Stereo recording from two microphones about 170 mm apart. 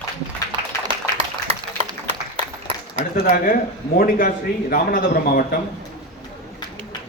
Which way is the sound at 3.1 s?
55° left (ahead or behind).